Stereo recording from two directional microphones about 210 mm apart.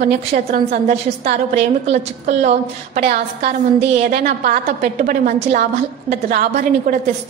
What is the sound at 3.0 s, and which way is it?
A woman's voice, 45° right (ahead or behind).